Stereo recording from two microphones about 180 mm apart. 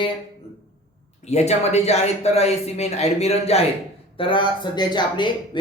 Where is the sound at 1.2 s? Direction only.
40° left (ahead or behind).